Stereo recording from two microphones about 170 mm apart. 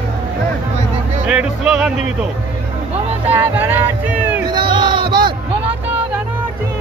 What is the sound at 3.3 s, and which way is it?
Music, 10° right (ahead or behind).